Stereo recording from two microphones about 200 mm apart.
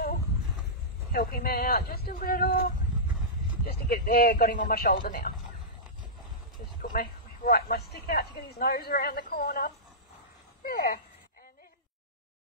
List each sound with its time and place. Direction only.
1.1 s a woman's voice: 50° left (ahead or behind)
3.6 s a woman's voice: 50° left (ahead or behind)
6.8 s a sound: 45° left (ahead or behind)
7.9 s a woman's voice: 50° left (ahead or behind)